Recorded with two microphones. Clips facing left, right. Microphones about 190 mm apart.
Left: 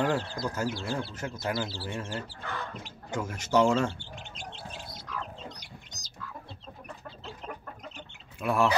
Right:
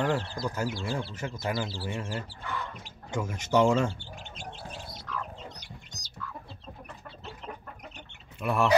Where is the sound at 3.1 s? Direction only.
15° right (ahead or behind).